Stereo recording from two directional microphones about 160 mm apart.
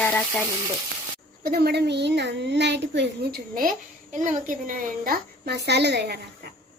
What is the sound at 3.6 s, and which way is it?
Speech, 55° right (ahead or behind).